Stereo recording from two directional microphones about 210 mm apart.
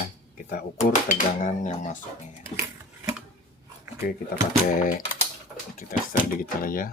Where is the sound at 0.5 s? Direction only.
40° left (ahead or behind).